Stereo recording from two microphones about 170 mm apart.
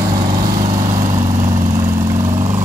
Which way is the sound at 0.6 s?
50° right (ahead or behind).